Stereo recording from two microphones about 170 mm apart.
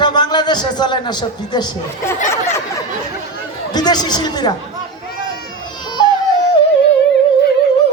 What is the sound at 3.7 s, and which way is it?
Speech, 25° left (ahead or behind).